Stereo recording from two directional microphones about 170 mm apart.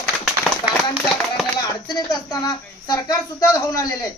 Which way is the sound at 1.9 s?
25° left (ahead or behind).